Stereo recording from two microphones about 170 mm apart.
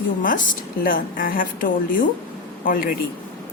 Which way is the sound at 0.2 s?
50° left (ahead or behind).